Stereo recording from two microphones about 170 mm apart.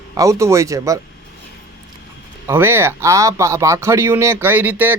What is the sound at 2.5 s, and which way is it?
Speech, 15° right (ahead or behind).